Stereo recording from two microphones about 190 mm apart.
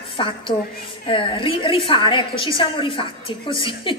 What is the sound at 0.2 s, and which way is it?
A woman's voice, 30° left (ahead or behind).